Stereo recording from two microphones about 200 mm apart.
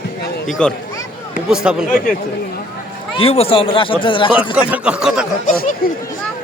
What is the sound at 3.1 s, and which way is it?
Speech, 30° left (ahead or behind).